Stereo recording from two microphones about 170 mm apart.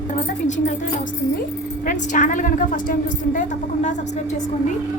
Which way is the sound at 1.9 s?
50° left (ahead or behind).